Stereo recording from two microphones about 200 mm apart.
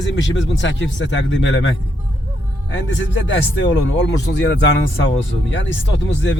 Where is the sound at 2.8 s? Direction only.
70° left (ahead or behind).